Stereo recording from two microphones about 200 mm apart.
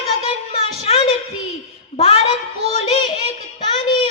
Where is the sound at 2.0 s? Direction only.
30° left (ahead or behind).